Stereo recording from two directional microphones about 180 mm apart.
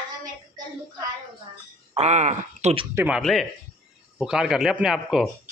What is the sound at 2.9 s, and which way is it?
A man's voice, 10° right (ahead or behind).